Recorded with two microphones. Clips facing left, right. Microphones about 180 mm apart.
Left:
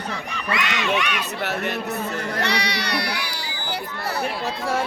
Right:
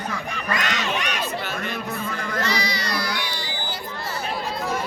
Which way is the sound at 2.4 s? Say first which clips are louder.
Left 1 dB; 65° left (ahead or behind).